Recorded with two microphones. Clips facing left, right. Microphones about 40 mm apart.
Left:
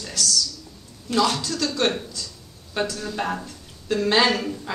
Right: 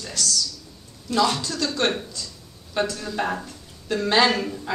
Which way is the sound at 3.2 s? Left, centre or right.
Centre.